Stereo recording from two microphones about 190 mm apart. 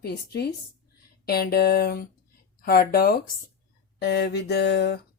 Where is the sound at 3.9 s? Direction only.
60° left (ahead or behind).